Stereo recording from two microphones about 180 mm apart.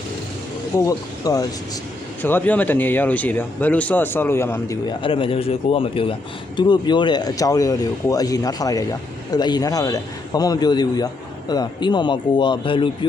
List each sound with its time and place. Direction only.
0.8 s speech: 20° left (ahead or behind)
4.9 s speech: 30° left (ahead or behind)